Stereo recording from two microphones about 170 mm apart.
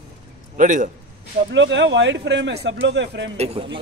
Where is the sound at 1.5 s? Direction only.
90° right.